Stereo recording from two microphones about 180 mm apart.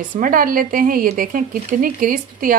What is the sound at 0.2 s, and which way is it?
Speech, 50° right (ahead or behind).